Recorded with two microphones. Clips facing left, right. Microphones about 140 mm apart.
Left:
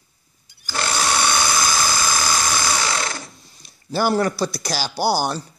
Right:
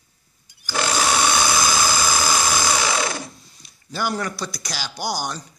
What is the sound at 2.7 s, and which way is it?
Sewing machine, 20° right (ahead or behind).